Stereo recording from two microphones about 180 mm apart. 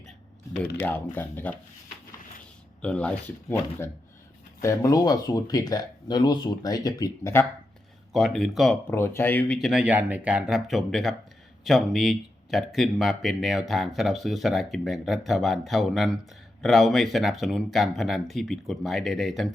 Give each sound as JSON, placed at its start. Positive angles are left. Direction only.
{"t": 0.8, "sound": "speech", "side_deg": 10}
{"t": 2.8, "sound": "speech", "side_deg": 5}
{"t": 4.6, "sound": "speech", "side_deg": 20}
{"t": 8.1, "sound": "speech", "side_deg": 0}
{"t": 9.6, "sound": "speech", "side_deg": 0}